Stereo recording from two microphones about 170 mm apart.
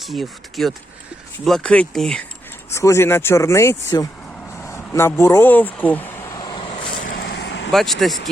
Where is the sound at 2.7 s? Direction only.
15° left (ahead or behind).